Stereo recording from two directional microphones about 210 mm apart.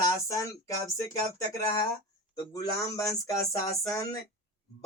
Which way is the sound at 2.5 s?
15° left (ahead or behind).